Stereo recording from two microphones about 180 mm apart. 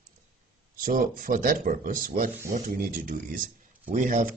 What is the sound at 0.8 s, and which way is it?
Speech, 50° right (ahead or behind).